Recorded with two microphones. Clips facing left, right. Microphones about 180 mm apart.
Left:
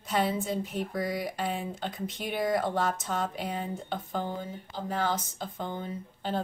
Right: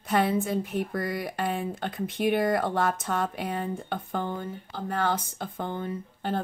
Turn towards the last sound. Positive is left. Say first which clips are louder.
# right 3 dB
turn(degrees=-55)  # may be behind; listen again after turning